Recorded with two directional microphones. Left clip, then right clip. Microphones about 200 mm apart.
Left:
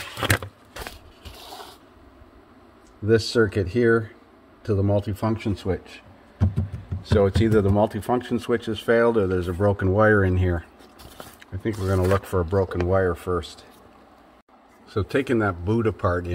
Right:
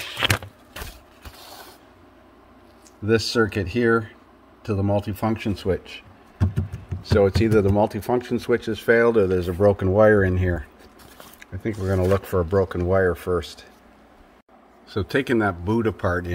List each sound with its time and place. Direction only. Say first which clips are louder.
3.1 s speech: left 1 dB; 15° right (ahead or behind)
14.9 s speech: right 1 dB; 20° right (ahead or behind)